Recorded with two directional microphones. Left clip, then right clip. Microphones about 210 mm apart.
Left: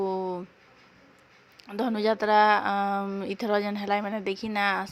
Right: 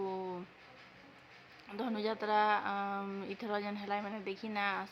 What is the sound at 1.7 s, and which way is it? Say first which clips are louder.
A woman's voice: left 11 dB; 35° left (ahead or behind).